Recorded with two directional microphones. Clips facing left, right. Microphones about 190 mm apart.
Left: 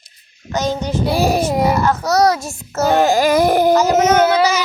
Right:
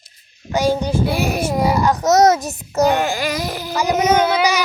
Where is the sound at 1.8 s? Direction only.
20° right (ahead or behind).